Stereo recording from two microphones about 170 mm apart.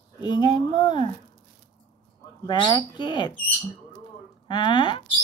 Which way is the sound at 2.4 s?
25° left (ahead or behind).